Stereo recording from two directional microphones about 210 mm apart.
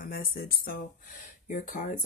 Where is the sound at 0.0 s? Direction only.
45° left (ahead or behind).